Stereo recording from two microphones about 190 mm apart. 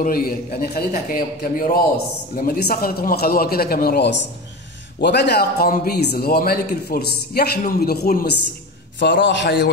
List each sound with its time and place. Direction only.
0.0 s a man's voice: 50° left (ahead or behind)
9.0 s a man's voice: 70° left (ahead or behind)